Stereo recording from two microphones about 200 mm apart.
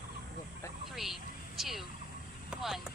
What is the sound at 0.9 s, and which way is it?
Vehicle, centre (ahead or behind).